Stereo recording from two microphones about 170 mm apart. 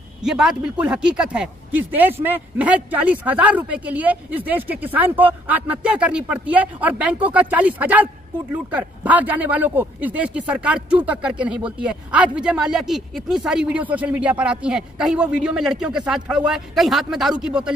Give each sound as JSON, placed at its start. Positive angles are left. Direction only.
{"t": 0.2, "sound": "speech", "side_deg": -5}